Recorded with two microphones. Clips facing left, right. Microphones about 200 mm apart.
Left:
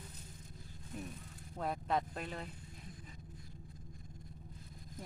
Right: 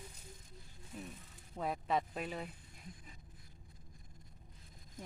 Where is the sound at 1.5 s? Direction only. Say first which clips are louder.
Even; centre (ahead or behind).